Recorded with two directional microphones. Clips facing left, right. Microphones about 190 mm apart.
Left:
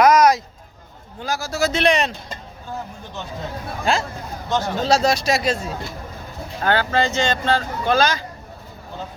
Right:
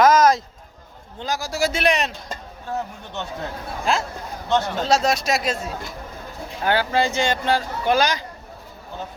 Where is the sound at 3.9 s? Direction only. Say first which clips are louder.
Left 1 dB; centre (ahead or behind).